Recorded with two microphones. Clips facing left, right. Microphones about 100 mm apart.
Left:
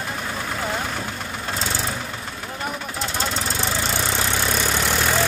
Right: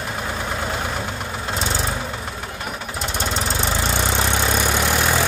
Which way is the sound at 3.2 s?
20° right (ahead or behind).